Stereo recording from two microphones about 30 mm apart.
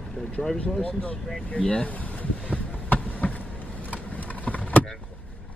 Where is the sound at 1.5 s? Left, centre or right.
Left.